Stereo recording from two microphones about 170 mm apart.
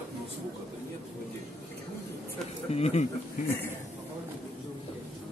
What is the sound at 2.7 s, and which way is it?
Speech, 40° left (ahead or behind).